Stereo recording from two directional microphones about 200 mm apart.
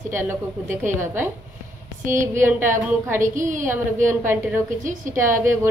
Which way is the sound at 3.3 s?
40° right (ahead or behind).